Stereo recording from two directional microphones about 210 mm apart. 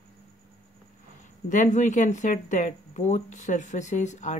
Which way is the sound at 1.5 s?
35° left (ahead or behind).